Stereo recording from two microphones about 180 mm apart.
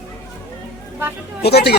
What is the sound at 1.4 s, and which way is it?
Speech, 65° left (ahead or behind).